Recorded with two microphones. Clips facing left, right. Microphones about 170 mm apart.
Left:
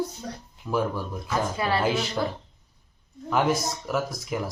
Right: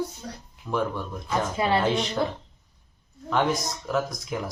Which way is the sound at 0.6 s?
10° left (ahead or behind).